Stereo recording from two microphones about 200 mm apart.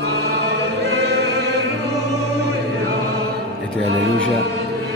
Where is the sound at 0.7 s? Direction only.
55° right (ahead or behind).